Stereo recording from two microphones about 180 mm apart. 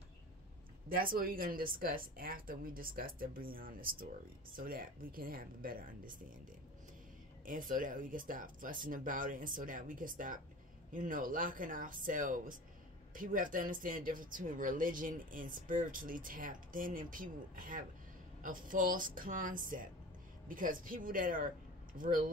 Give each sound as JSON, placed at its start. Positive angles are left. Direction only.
{"t": 0.8, "sound": "speech", "side_deg": -55}
{"t": 7.4, "sound": "speech", "side_deg": -50}